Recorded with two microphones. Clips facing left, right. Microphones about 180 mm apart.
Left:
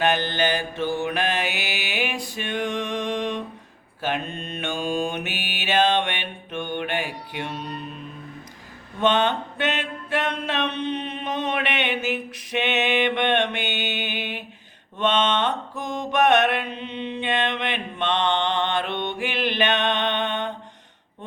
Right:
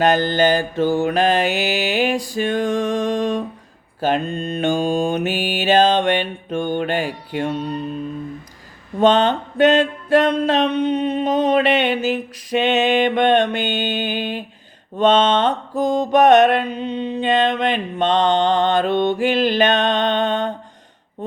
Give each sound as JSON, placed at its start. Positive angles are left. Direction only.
{"t": 0.0, "sound": "mantra", "side_deg": -40}
{"t": 9.0, "sound": "mantra", "side_deg": -40}